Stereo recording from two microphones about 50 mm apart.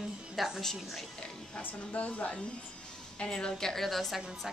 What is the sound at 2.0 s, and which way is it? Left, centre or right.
A woman's voice, left.